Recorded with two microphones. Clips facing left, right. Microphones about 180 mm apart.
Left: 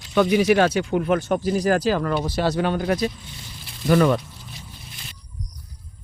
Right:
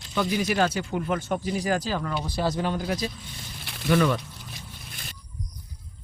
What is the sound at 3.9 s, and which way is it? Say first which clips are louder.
Speech: left 5 dB; 45° left (ahead or behind).